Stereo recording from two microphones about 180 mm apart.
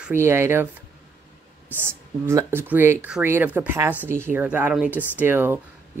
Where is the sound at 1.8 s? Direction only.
15° right (ahead or behind).